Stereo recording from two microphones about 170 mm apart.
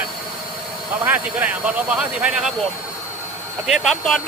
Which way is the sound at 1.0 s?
10° right (ahead or behind).